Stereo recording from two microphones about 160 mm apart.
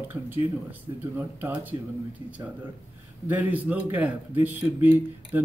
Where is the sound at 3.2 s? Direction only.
10° right (ahead or behind).